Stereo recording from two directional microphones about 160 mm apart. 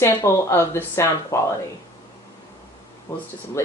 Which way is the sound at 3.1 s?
15° left (ahead or behind).